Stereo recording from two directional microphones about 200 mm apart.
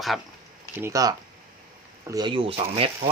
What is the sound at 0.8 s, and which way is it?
Speech, 15° right (ahead or behind).